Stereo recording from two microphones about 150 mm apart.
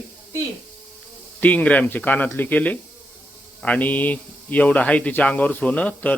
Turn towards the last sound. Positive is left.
turn(degrees=10)  # may be behind; listen again after turning